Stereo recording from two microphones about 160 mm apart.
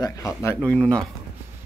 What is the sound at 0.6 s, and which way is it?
Speech, 5° left (ahead or behind).